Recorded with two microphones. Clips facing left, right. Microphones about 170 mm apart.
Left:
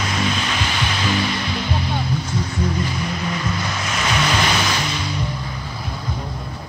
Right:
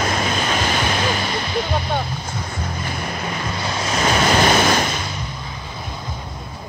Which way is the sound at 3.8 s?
35° right (ahead or behind).